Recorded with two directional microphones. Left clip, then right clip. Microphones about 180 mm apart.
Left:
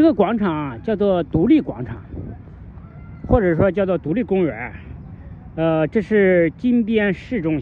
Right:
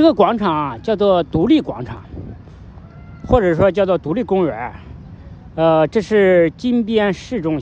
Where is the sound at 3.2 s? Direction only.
50° left (ahead or behind).